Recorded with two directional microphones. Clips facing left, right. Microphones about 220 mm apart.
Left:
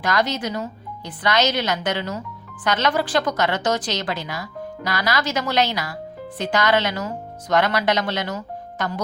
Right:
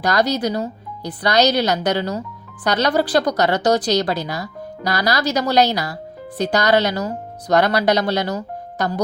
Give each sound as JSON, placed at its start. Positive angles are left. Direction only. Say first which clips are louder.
{"t": 0.0, "sound": "a woman's voice", "louder": "right 4 dB", "side_deg": -40}